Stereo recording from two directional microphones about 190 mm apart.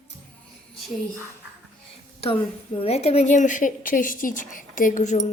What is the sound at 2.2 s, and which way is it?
A woman's voice, 30° left (ahead or behind).